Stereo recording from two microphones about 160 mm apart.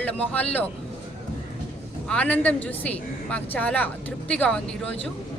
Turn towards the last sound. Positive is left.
turn(degrees=5)  # may be behind; listen again after turning